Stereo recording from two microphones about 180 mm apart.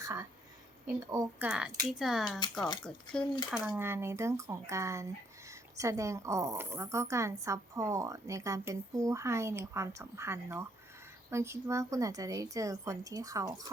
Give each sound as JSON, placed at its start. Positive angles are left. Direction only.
{"t": 0.0, "sound": "a woman's voice", "side_deg": -15}
{"t": 1.5, "sound": "speech", "side_deg": -5}
{"t": 2.4, "sound": "speech", "side_deg": 25}
{"t": 2.8, "sound": "speech", "side_deg": 5}
{"t": 3.7, "sound": "a woman's voice", "side_deg": -15}